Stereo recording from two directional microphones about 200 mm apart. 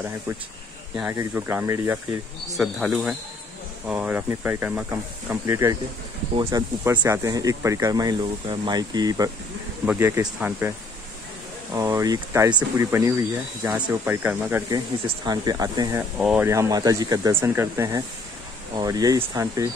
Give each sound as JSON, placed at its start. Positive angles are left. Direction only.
{"t": 0.9, "sound": "speech", "side_deg": -10}
{"t": 11.7, "sound": "speech", "side_deg": -15}
{"t": 16.2, "sound": "speech", "side_deg": -5}